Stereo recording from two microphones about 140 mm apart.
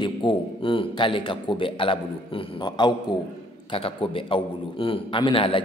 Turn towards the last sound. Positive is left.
turn(degrees=40)  # may be behind; listen again after turning